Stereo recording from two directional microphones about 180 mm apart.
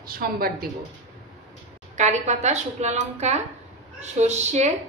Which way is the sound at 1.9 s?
40° right (ahead or behind).